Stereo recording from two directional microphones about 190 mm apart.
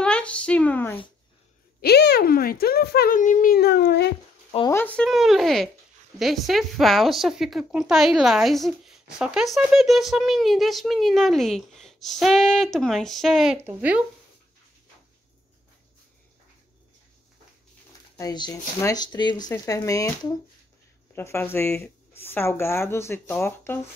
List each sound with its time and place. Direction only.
0.0 s a sound: 5° left (ahead or behind)
1.8 s speech: 55° left (ahead or behind)
4.6 s a woman's voice: 10° left (ahead or behind); by 14.0 s 5° right (ahead or behind)
18.1 s speech: 20° left (ahead or behind)